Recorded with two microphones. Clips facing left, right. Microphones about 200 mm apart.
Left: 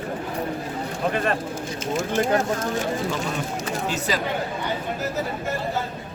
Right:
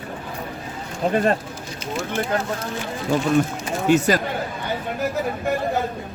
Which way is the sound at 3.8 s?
50° right (ahead or behind).